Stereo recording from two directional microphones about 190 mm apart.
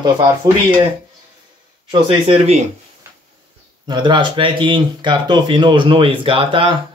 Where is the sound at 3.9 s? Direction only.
25° right (ahead or behind).